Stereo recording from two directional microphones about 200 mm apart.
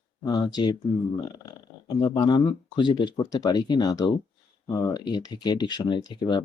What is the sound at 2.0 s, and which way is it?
Speech, 25° left (ahead or behind).